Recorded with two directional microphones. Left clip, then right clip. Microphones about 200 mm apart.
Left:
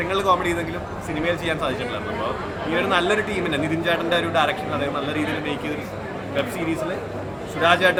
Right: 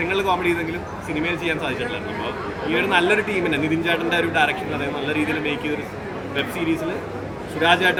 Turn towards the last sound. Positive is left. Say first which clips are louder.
# even
turn(degrees=15)  # may be behind; listen again after turning